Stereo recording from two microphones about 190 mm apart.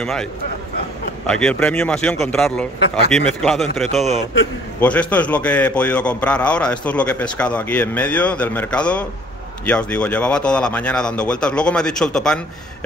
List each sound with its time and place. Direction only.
0.0 s a man's voice: 5° left (ahead or behind)
4.7 s a man's voice: 5° left (ahead or behind)